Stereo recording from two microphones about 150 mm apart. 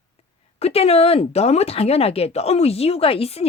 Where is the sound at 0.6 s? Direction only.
45° left (ahead or behind).